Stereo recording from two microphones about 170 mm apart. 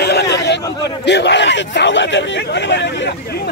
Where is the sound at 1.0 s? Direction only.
90° left.